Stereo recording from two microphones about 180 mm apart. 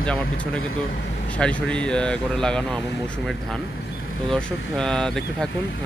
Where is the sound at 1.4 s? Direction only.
5° left (ahead or behind).